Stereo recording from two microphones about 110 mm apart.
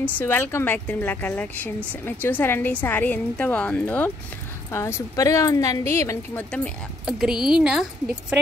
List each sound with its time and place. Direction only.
0.0 s speech: 20° left (ahead or behind)
4.6 s a woman's voice: 25° left (ahead or behind)
6.3 s speech: 10° left (ahead or behind)
7.1 s a woman's voice: 5° right (ahead or behind)